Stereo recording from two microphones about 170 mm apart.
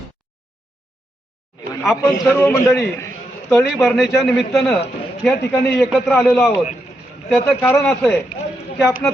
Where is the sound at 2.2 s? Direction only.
15° left (ahead or behind).